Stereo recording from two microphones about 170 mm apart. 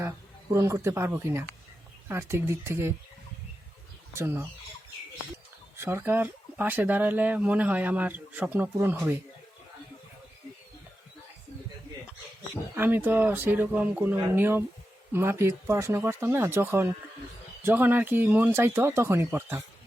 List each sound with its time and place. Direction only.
0.5 s speech: 15° right (ahead or behind)
4.1 s speech: 15° right (ahead or behind)
5.7 s speech: 15° right (ahead or behind)
12.7 s speech: 10° right (ahead or behind)